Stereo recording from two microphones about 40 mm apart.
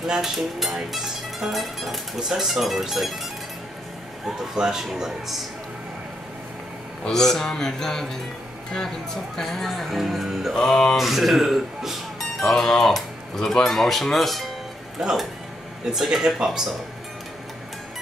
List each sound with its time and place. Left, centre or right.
0.0 s speech: centre
0.4 s speech: centre
0.9 s music: centre
1.6 s speech: centre
4.4 s music: centre
7.1 s speech: centre
10.5 s speech: centre
11.0 s speech: centre
15.0 s speech: centre
16.0 s music: centre